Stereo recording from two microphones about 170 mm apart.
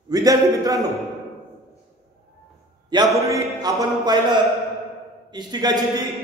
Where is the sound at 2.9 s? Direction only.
20° right (ahead or behind).